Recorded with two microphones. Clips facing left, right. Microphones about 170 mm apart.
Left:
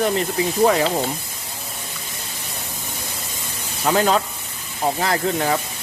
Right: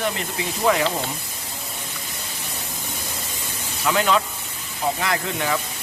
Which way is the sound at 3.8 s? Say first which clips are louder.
Left 2 dB; 40° left (ahead or behind).